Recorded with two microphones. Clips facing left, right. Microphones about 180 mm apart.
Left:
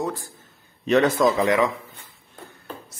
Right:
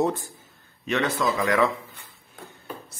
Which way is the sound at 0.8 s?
40° left (ahead or behind).